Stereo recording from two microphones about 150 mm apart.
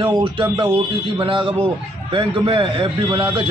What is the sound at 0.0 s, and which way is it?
A man's voice, 35° right (ahead or behind).